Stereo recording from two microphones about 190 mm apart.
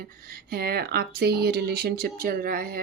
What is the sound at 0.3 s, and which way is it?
Speech, 55° right (ahead or behind).